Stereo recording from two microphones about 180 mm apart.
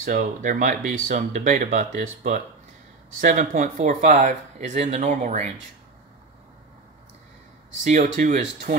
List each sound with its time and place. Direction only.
0.0 s speech: 50° right (ahead or behind)
3.2 s speech: 45° right (ahead or behind)
7.8 s speech: 40° right (ahead or behind)